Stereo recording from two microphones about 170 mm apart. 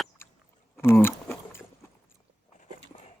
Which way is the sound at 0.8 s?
15° left (ahead or behind).